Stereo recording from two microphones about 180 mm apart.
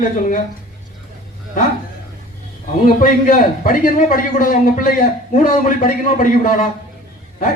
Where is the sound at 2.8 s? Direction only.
50° left (ahead or behind).